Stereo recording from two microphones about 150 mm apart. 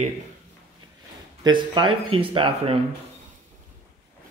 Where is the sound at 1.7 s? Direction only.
35° right (ahead or behind).